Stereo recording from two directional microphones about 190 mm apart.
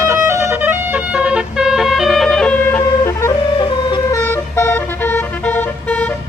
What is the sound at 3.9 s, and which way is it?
Vehicle, 25° left (ahead or behind).